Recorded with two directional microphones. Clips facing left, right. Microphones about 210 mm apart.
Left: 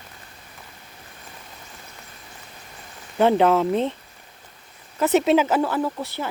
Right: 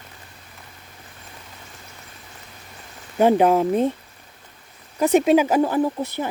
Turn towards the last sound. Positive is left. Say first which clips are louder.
# right 4 dB
turn(degrees=-15)  # may be behind; listen again after turning